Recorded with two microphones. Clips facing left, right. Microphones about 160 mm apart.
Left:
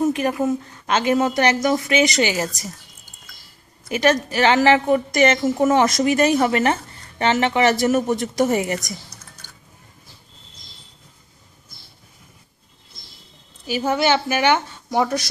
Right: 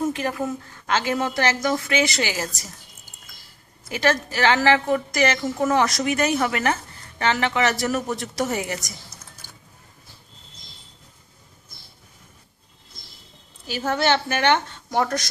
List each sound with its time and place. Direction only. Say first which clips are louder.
0.0 s a woman's voice: left 5 dB; 20° left (ahead or behind)
3.9 s a woman's voice: left 4 dB; 20° left (ahead or behind)
13.7 s a woman's voice: left 3 dB; 15° left (ahead or behind)